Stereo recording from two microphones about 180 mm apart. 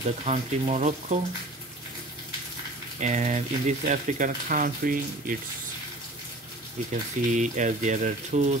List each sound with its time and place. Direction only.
0.2 s speech: 40° right (ahead or behind)
3.0 s speech: 40° right (ahead or behind)
6.9 s speech: 45° right (ahead or behind)